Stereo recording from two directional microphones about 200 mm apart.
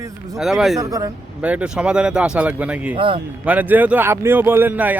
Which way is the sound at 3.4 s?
10° right (ahead or behind).